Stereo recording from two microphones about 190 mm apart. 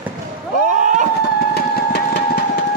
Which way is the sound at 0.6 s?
40° right (ahead or behind).